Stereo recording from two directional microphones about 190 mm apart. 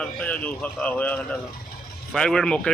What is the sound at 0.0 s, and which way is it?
Speech, 5° left (ahead or behind).